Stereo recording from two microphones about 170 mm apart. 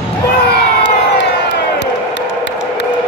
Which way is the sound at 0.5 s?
80° left.